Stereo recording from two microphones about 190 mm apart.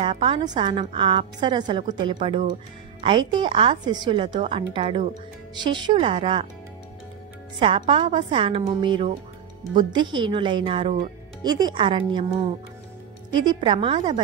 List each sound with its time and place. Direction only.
0.0 s a woman's voice: 25° right (ahead or behind)
7.5 s a woman's voice: 25° right (ahead or behind)
13.3 s a woman's voice: 25° right (ahead or behind)